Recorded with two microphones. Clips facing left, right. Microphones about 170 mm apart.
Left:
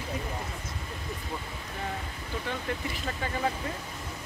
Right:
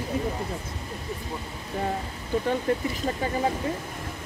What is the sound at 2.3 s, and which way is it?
Speech, 45° right (ahead or behind).